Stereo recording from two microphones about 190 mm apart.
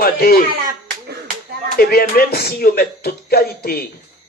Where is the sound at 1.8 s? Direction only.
55° left (ahead or behind).